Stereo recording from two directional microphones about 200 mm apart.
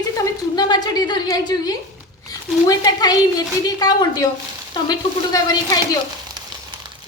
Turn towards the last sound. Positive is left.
turn(degrees=20)  # may be behind; listen again after turning